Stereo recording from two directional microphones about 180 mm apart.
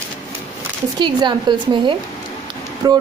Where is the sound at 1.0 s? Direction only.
25° right (ahead or behind).